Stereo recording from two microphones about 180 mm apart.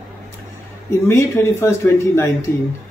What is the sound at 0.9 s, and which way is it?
Speech, 15° left (ahead or behind).